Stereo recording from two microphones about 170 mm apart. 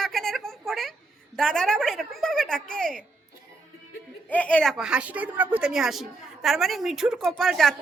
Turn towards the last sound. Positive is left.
turn(degrees=0)  # may be behind; listen again after turning